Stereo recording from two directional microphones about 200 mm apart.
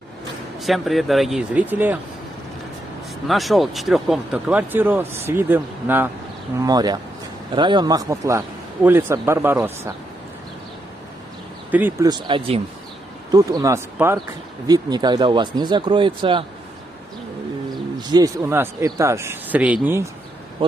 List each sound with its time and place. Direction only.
0.6 s speech: centre (ahead or behind)
3.3 s a man's voice: centre (ahead or behind)
11.7 s a man's voice: 10° right (ahead or behind)
12.1 s speech: 25° right (ahead or behind)
13.3 s a man's voice: 20° right (ahead or behind)
18.0 s a man's voice: 20° right (ahead or behind)